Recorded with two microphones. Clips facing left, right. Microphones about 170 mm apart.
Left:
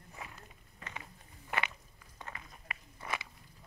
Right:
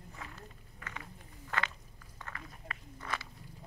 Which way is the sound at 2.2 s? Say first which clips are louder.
Right 1 dB; 20° left (ahead or behind).